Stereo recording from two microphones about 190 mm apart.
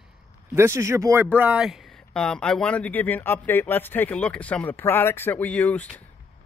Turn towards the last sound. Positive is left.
turn(degrees=10)  # may be behind; listen again after turning